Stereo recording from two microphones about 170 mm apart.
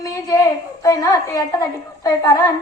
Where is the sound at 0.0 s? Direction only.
20° left (ahead or behind).